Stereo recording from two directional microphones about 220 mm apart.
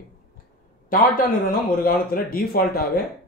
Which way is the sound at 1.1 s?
40° left (ahead or behind).